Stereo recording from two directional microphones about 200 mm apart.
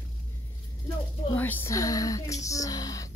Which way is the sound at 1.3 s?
10° left (ahead or behind).